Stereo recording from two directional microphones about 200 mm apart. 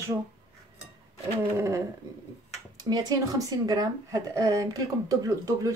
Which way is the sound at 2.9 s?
20° right (ahead or behind).